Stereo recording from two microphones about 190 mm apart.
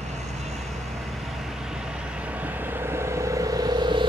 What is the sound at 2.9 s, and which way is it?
Vehicle, 15° right (ahead or behind).